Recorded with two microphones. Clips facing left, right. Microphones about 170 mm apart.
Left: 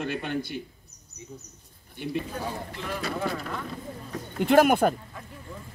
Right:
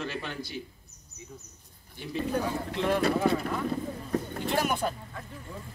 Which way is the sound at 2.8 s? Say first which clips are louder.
Right 8 dB; 55° right (ahead or behind).